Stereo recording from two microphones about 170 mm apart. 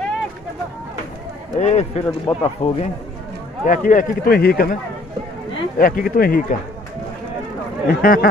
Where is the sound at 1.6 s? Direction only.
40° left (ahead or behind).